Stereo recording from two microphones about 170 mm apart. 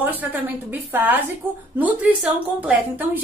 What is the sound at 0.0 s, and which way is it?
A woman's voice, 10° right (ahead or behind).